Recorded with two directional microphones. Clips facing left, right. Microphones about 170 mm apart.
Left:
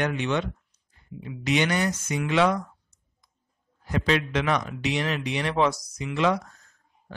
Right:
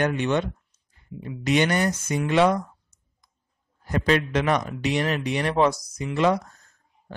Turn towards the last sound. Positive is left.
turn(degrees=-45)  # may be behind; listen again after turning